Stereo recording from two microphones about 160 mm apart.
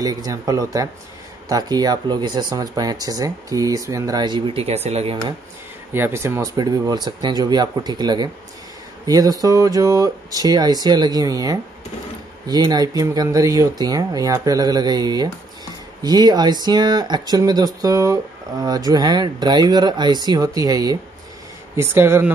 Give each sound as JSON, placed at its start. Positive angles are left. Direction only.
{"t": 0.0, "sound": "speech", "side_deg": -25}
{"t": 5.9, "sound": "speech", "side_deg": -15}